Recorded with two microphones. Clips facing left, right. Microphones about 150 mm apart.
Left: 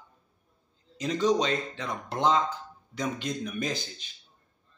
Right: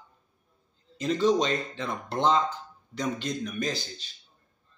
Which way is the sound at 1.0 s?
10° left (ahead or behind).